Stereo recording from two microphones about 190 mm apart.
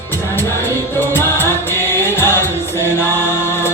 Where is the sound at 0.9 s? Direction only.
10° left (ahead or behind).